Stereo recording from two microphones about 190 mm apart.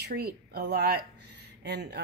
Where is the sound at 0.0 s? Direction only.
55° right (ahead or behind).